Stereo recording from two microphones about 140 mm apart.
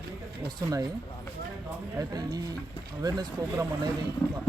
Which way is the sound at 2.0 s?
25° right (ahead or behind).